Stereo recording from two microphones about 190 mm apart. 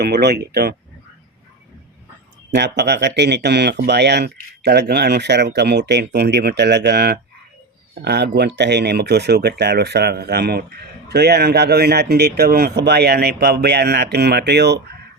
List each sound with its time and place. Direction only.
0.0 s speech: 60° right (ahead or behind)
2.5 s speech: 65° right (ahead or behind)